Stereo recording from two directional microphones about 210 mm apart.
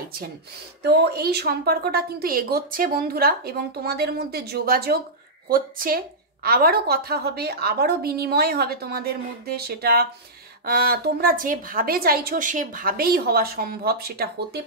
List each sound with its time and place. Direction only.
0.8 s a woman's voice: 50° right (ahead or behind)